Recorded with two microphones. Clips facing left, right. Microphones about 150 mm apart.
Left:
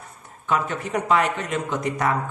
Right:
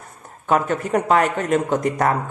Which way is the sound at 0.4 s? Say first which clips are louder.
Right 5 dB; 50° right (ahead or behind).